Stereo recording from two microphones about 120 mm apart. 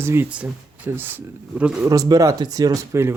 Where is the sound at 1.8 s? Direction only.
30° right (ahead or behind).